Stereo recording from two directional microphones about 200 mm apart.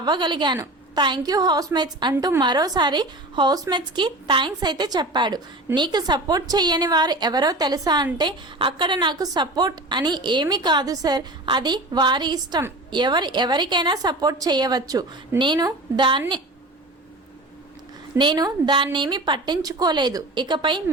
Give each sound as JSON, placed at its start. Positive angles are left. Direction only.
{"t": 0.0, "sound": "a woman's voice", "side_deg": -20}
{"t": 18.2, "sound": "a woman's voice", "side_deg": -20}